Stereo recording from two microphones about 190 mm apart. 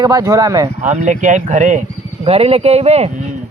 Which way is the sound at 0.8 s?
40° right (ahead or behind).